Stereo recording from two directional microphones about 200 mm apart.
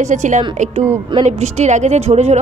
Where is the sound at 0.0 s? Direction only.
35° right (ahead or behind).